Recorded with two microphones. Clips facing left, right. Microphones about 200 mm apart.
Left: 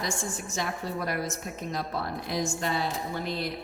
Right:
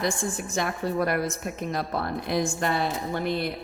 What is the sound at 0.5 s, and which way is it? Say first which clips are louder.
A woman's voice: right 6 dB; 60° right (ahead or behind).